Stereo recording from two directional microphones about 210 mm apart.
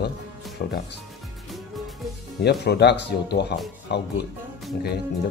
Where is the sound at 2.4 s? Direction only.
50° left (ahead or behind).